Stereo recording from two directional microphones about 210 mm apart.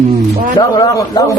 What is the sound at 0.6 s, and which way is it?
Speech, 20° left (ahead or behind).